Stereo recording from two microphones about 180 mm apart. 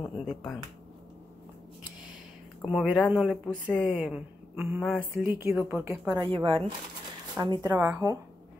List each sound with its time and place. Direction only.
0.1 s a sound: centre (ahead or behind)
2.7 s speech: centre (ahead or behind)
3.9 s speech: 5° right (ahead or behind)
4.8 s speech: centre (ahead or behind)
5.2 s a woman's voice: 10° right (ahead or behind)
6.2 s speech: 30° right (ahead or behind)